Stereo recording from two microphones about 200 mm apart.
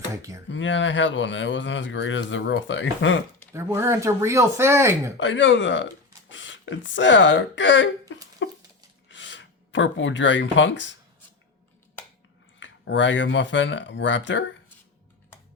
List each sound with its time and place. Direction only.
0.2 s speech: 15° right (ahead or behind)
0.4 s speech: 65° left (ahead or behind)
3.5 s speech: 15° right (ahead or behind)
5.1 s speech: 65° left (ahead or behind)
8.4 s a sound: 70° left (ahead or behind)
9.0 s speech: 65° left (ahead or behind)
12.5 s speech: 65° left (ahead or behind)